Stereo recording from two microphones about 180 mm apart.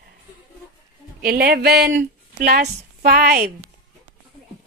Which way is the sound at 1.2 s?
60° right (ahead or behind).